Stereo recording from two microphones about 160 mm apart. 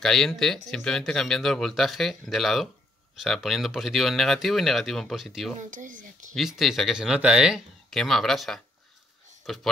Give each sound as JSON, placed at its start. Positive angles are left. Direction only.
{"t": 0.0, "sound": "speech", "side_deg": 5}
{"t": 5.6, "sound": "speech", "side_deg": -55}
{"t": 6.3, "sound": "speech", "side_deg": 0}